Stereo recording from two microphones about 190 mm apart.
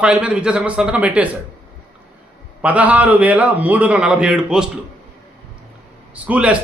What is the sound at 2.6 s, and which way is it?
A man's voice, 5° right (ahead or behind).